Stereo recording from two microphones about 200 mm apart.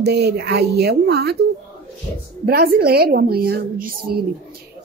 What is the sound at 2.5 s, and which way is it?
A woman's voice, 50° right (ahead or behind).